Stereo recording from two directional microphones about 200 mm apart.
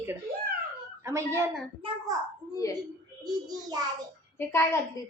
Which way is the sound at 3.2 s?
20° right (ahead or behind).